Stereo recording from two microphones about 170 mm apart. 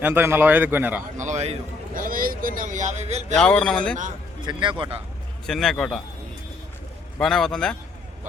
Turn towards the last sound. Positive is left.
turn(degrees=5)  # may be behind; listen again after turning